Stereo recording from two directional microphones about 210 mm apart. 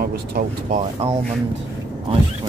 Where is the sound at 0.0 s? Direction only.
45° right (ahead or behind).